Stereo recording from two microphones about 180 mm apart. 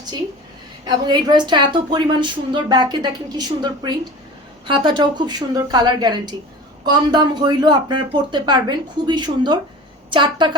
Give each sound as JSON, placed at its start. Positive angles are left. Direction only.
{"t": 0.9, "sound": "a woman's voice", "side_deg": -25}